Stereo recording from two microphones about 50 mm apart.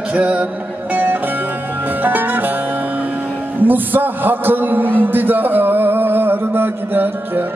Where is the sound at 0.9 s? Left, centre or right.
Right.